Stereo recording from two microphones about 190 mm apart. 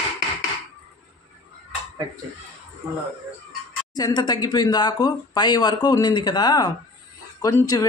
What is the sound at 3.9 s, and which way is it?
Speech, 20° left (ahead or behind).